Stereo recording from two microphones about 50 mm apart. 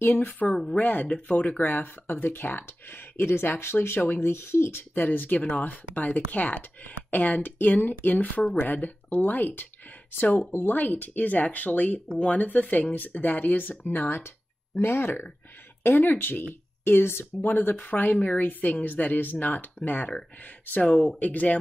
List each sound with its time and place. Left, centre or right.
0.0 s speech: left
1.0 s speech: left
1.3 s speech: left
4.9 s speech: left
7.8 s speech: left
8.1 s speech: left
17.5 s speech: left